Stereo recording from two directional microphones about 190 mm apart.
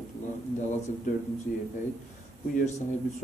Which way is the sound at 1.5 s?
45° left (ahead or behind).